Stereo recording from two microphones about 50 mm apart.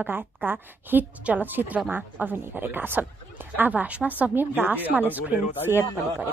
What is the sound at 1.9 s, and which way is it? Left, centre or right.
A woman's voice, right.